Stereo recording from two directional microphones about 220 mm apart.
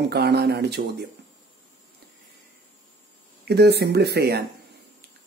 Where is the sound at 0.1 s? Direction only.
50° right (ahead or behind).